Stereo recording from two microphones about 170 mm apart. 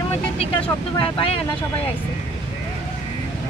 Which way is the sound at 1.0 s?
35° left (ahead or behind).